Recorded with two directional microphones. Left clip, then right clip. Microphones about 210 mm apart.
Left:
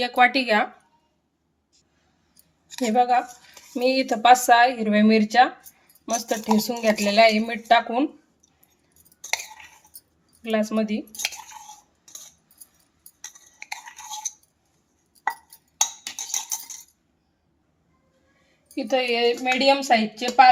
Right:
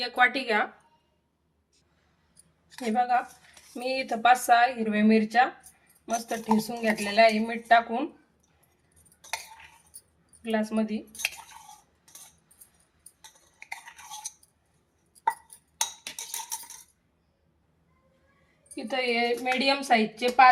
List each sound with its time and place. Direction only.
0.0 s a woman's voice: 40° left (ahead or behind)
2.6 s a woman's voice: 45° left (ahead or behind)
10.4 s a woman's voice: 45° left (ahead or behind)
13.6 s stir: 15° left (ahead or behind)
18.7 s a woman's voice: 50° left (ahead or behind)